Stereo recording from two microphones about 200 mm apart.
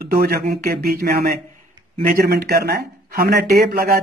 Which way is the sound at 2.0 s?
55° right (ahead or behind).